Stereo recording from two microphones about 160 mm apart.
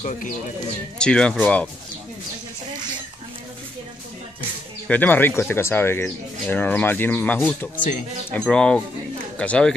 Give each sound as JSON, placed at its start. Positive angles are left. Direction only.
{"t": 0.9, "sound": "speech", "side_deg": 5}
{"t": 4.8, "sound": "speech", "side_deg": 10}